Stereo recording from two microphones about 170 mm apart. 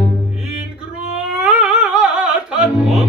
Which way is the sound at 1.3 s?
Centre (ahead or behind).